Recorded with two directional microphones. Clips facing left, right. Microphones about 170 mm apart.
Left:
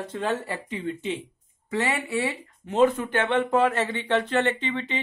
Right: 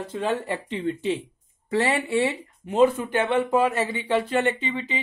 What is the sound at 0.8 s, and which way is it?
Speech, 35° right (ahead or behind).